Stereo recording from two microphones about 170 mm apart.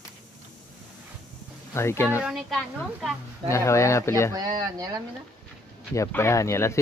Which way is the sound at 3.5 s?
15° left (ahead or behind).